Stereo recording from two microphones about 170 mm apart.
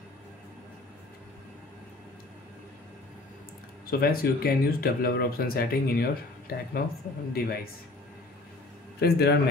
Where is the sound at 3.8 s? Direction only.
60° left (ahead or behind).